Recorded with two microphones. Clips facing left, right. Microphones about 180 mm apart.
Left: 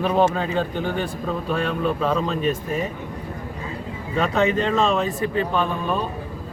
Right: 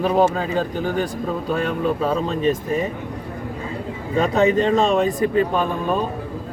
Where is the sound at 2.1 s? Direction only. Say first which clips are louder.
Right 2 dB; 35° right (ahead or behind).